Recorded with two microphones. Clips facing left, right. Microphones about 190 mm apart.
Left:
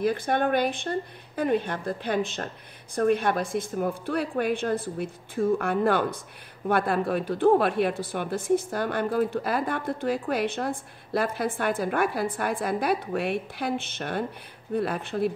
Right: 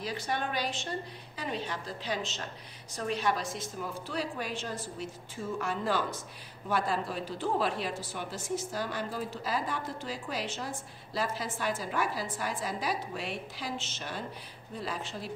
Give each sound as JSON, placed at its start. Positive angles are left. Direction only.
{"t": 0.0, "sound": "speech", "side_deg": 55}